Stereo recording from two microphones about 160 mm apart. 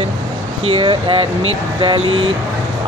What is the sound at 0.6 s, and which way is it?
Speech, 35° right (ahead or behind).